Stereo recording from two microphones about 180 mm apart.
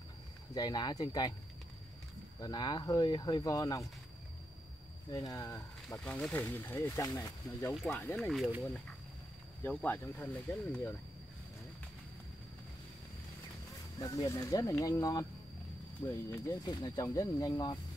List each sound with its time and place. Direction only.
0.6 s speech: 25° left (ahead or behind)
2.4 s speech: 25° left (ahead or behind)
5.1 s speech: 20° left (ahead or behind)
7.9 s speech: 10° left (ahead or behind)
9.6 s speech: 10° left (ahead or behind)
13.9 s speech: 20° left (ahead or behind)
16.3 s speech: 20° left (ahead or behind)